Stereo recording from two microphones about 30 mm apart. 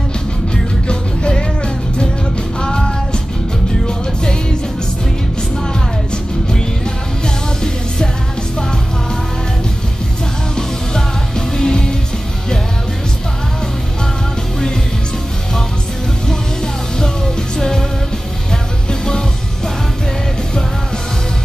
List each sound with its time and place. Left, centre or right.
0.8 s music: left
2.6 s music: left
10.5 s music: left
17.6 s music: centre
18.9 s music: left